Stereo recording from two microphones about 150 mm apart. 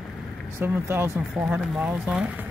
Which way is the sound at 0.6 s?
15° right (ahead or behind).